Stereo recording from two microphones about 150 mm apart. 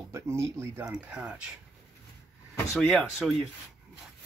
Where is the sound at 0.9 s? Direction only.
5° right (ahead or behind).